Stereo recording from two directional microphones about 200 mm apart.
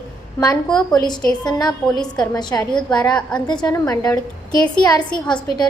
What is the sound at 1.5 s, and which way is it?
Speech, 20° left (ahead or behind).